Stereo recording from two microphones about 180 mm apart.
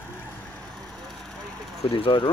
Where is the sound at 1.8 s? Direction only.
30° left (ahead or behind).